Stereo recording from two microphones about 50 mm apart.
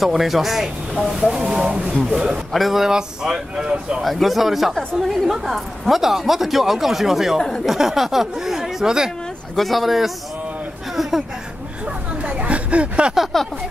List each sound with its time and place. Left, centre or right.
0.0 s speech: centre
3.6 s speech: right
4.0 s speech: centre
9.6 s speech: centre
11.8 s a sound: right
13.3 s speech: centre